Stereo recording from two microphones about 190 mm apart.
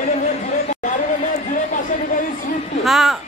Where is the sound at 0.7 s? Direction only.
40° left (ahead or behind).